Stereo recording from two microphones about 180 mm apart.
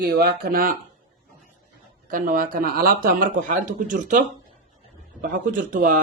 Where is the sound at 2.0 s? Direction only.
50° right (ahead or behind).